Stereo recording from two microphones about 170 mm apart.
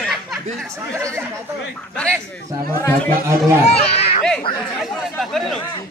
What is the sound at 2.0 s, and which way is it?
Speech, 5° left (ahead or behind).